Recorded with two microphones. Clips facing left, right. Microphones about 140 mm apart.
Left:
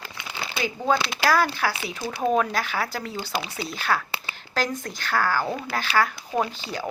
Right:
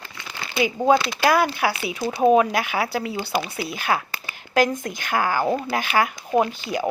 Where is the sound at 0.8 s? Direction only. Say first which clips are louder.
Right 4 dB; 10° right (ahead or behind).